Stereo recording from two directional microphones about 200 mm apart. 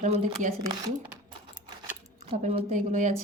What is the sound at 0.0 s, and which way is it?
Speech, 35° right (ahead or behind).